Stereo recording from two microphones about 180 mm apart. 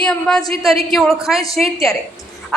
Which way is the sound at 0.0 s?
5° left (ahead or behind).